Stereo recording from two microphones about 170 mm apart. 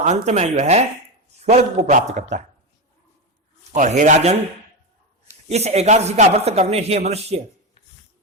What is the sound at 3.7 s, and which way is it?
Speech, 45° right (ahead or behind).